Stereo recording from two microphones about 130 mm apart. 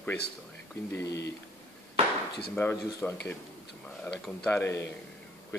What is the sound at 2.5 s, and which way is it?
Speech, 15° left (ahead or behind).